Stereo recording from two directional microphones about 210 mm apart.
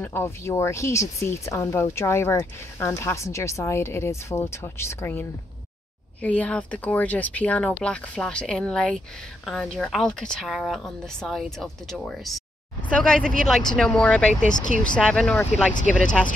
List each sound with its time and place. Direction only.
0.0 s speech: 10° left (ahead or behind)
6.2 s speech: 5° left (ahead or behind)
14.4 s speech: 35° left (ahead or behind)
15.0 s speech: 5° left (ahead or behind)